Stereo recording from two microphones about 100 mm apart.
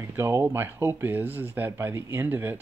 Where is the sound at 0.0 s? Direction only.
25° right (ahead or behind).